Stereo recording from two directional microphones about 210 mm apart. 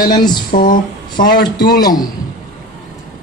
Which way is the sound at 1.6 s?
20° left (ahead or behind).